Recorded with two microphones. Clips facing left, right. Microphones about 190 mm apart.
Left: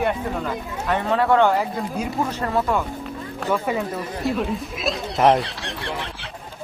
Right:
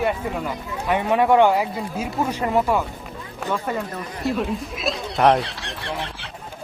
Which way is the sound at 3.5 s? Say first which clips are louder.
Left 3 dB; 5° left (ahead or behind).